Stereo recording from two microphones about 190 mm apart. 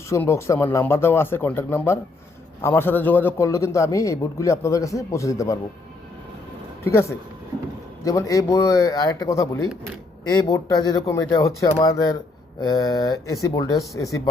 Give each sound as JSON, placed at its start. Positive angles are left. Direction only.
{"t": 0.1, "sound": "a man's voice", "side_deg": 15}
{"t": 6.8, "sound": "a man's voice", "side_deg": 15}